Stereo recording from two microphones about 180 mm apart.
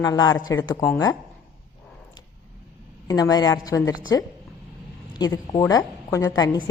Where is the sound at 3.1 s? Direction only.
20° left (ahead or behind).